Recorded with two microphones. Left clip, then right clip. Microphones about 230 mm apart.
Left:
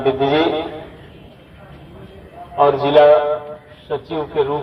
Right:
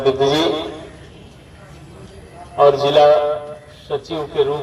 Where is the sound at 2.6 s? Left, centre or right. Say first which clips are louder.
Even; right.